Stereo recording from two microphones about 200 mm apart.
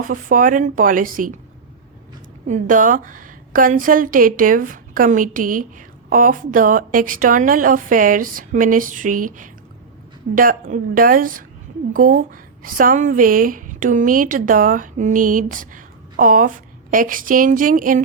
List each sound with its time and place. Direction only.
0.0 s speech: 40° right (ahead or behind)
2.5 s a woman's voice: 40° right (ahead or behind)